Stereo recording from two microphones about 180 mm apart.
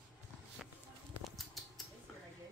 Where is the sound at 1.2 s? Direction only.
Centre (ahead or behind).